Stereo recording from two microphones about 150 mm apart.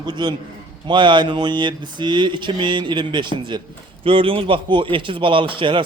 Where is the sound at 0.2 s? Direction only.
30° right (ahead or behind).